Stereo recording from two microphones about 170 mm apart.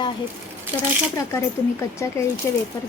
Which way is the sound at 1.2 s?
15° left (ahead or behind).